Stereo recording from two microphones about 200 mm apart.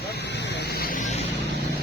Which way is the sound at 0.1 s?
55° left (ahead or behind).